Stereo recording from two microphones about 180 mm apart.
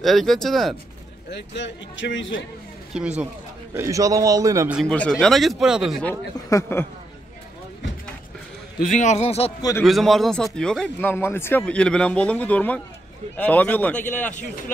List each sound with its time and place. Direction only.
0.0 s speech: centre (ahead or behind)
1.3 s a man's voice: 80° left
2.9 s speech: 5° right (ahead or behind)
3.7 s a man's voice: 15° right (ahead or behind)
4.8 s speech: 5° left (ahead or behind)
6.0 s speech: 10° left (ahead or behind)
8.7 s a man's voice: 45° left (ahead or behind)
9.6 s a man's voice: 20° left (ahead or behind)
9.8 s speech: centre (ahead or behind)